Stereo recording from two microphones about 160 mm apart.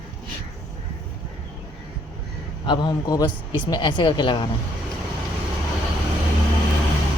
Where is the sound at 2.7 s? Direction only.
25° left (ahead or behind).